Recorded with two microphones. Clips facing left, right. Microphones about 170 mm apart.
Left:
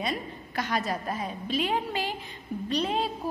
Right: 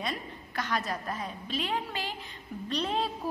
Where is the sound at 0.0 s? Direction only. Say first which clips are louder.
Left 4 dB; 10° left (ahead or behind).